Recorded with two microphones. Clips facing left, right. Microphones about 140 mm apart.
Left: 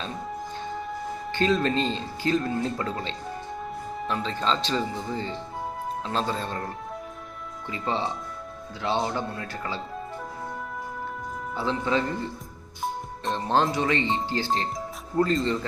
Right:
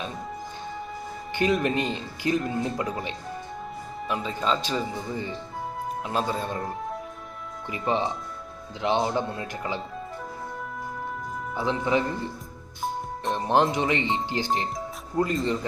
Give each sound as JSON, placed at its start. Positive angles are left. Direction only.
{"t": 1.3, "sound": "speech", "side_deg": -15}
{"t": 6.6, "sound": "speech", "side_deg": 0}
{"t": 7.7, "sound": "speech", "side_deg": -15}
{"t": 11.5, "sound": "speech", "side_deg": -15}
{"t": 13.3, "sound": "speech", "side_deg": -15}